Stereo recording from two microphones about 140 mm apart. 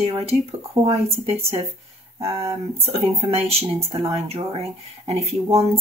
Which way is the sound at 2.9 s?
45° right (ahead or behind).